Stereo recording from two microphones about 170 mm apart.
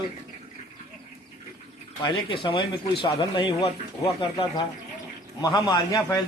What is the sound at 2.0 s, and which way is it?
Speech, 30° left (ahead or behind).